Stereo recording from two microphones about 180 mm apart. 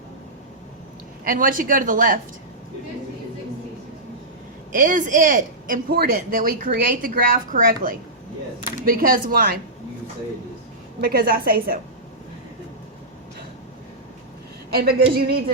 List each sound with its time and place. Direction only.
1.2 s speech: 50° right (ahead or behind)
4.7 s a woman's voice: 45° right (ahead or behind)
11.0 s a woman's voice: 55° right (ahead or behind)
14.8 s a woman's voice: 55° right (ahead or behind)